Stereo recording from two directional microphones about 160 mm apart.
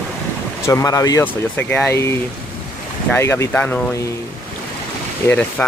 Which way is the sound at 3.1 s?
15° left (ahead or behind).